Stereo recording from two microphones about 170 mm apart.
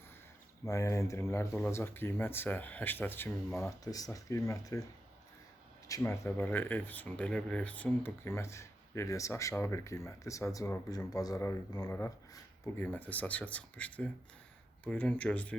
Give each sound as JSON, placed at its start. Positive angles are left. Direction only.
{"t": 0.6, "sound": "speech", "side_deg": 20}
{"t": 5.9, "sound": "speech", "side_deg": 15}